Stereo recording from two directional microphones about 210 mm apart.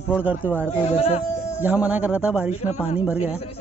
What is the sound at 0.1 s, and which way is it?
Speech, 5° right (ahead or behind).